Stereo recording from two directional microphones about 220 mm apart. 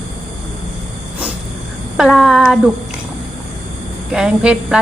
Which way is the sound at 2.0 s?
5° right (ahead or behind).